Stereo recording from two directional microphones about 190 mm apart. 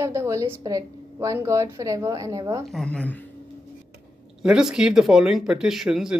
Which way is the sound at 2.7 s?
5° left (ahead or behind).